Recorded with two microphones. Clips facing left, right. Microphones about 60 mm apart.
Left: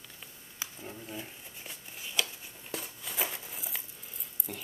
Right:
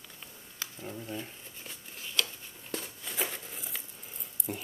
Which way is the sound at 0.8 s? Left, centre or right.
Centre.